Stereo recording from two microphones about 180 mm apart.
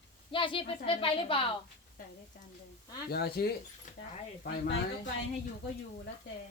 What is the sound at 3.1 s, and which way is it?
Speech, 60° left (ahead or behind).